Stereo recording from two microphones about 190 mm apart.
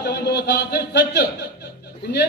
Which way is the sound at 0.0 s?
60° left (ahead or behind).